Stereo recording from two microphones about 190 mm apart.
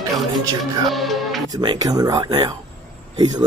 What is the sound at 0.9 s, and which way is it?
Music, centre (ahead or behind).